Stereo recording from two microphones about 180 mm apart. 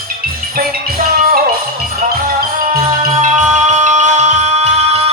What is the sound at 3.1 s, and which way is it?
Music, 45° right (ahead or behind).